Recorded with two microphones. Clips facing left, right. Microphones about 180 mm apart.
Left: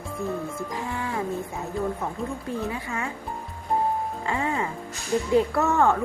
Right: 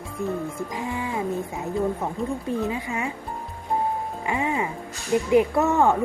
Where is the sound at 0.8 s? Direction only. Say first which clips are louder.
Right 2 dB; 15° right (ahead or behind).